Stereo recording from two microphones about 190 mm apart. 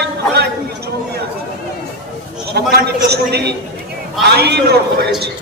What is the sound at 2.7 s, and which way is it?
A man's voice, 55° right (ahead or behind).